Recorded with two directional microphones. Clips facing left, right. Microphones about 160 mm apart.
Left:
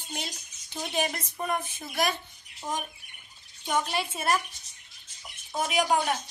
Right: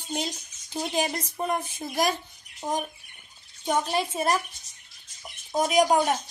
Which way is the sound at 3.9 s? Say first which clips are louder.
Right 3 dB; 35° right (ahead or behind).